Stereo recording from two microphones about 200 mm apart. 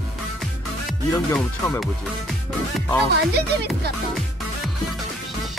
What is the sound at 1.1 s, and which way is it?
Speech, 10° left (ahead or behind).